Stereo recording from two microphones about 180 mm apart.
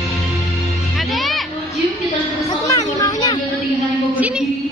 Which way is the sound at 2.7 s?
20° left (ahead or behind).